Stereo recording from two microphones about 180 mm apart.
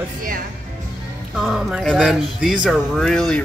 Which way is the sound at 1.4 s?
5° right (ahead or behind).